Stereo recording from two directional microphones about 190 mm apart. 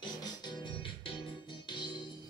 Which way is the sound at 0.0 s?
20° left (ahead or behind).